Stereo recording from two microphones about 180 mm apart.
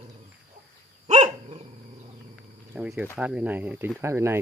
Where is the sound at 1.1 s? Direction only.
35° right (ahead or behind).